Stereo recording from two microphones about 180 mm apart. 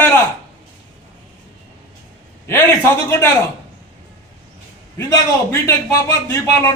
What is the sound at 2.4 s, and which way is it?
Speech, 15° left (ahead or behind).